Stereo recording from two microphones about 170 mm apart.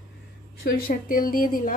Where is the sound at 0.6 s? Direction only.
55° left (ahead or behind).